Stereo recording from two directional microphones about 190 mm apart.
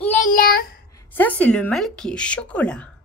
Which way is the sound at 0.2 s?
45° left (ahead or behind).